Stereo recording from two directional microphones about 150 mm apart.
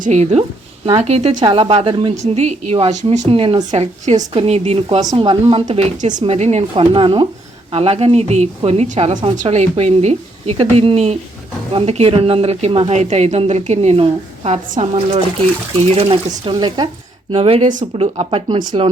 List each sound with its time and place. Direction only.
0.0 s a woman's voice: 50° right (ahead or behind); by 2.1 s 35° right (ahead or behind)
2.1 s a woman's voice: 50° right (ahead or behind)
3.7 s a woman's voice: 50° right (ahead or behind)
5.1 s speech: 35° right (ahead or behind)
5.6 s a woman's voice: 50° right (ahead or behind)
16.5 s speech: 30° right (ahead or behind)
17.3 s a woman's voice: 45° right (ahead or behind)